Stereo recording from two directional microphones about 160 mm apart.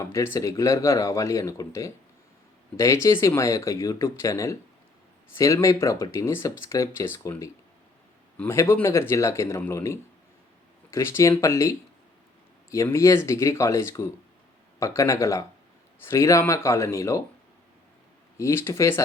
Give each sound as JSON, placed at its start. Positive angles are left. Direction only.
{"t": 0.3, "sound": "speech", "side_deg": 20}
{"t": 18.3, "sound": "speech", "side_deg": 15}